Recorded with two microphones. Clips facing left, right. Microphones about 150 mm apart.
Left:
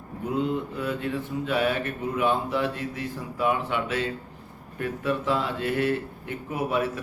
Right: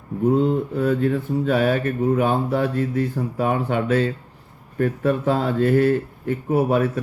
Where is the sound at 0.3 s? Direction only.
40° right (ahead or behind).